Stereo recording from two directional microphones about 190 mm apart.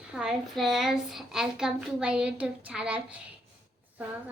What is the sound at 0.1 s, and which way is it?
A woman's voice, 5° right (ahead or behind).